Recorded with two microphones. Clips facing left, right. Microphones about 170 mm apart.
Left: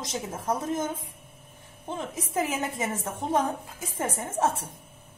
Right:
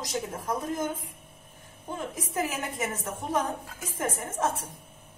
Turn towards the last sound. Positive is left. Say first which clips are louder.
# left 3 dB
turn(degrees=25)  # may be behind; listen again after turning